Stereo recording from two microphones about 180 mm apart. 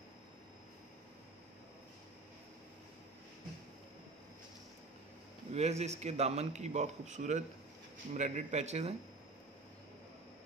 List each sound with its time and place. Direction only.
5.5 s a man's voice: 35° right (ahead or behind)